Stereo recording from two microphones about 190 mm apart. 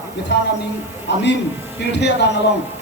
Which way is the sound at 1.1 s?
65° left (ahead or behind).